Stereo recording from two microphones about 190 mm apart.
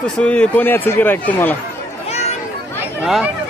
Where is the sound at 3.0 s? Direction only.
Centre (ahead or behind).